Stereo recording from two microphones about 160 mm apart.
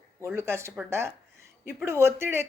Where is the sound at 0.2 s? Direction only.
15° right (ahead or behind).